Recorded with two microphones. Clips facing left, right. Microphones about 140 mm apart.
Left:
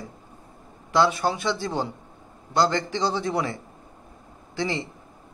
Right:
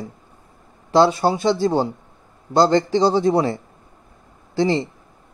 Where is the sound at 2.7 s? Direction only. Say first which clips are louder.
Right 9 dB; 20° right (ahead or behind).